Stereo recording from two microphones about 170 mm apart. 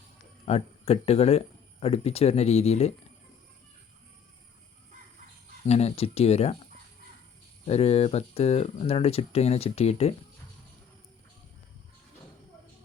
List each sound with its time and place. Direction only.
0.4 s speech: 40° left (ahead or behind)
5.6 s speech: 40° left (ahead or behind)
7.7 s speech: 35° left (ahead or behind)